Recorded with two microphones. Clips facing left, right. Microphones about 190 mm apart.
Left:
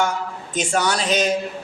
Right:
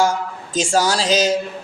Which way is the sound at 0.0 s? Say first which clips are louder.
Right 4 dB; 90° right.